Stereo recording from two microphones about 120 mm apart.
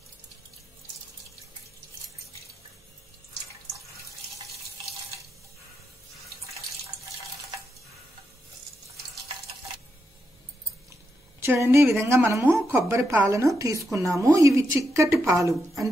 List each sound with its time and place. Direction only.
11.3 s a woman's voice: 20° right (ahead or behind)